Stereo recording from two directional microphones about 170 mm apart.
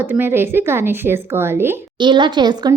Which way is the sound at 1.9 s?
25° right (ahead or behind).